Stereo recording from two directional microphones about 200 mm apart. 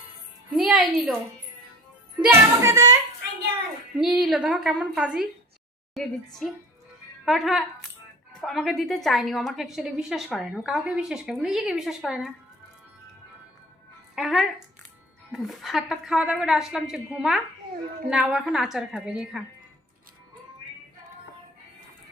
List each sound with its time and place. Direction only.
0.5 s music: centre (ahead or behind)
2.2 s speech: 15° right (ahead or behind)
3.9 s a woman's voice: 5° right (ahead or behind)
14.2 s a woman's voice: centre (ahead or behind)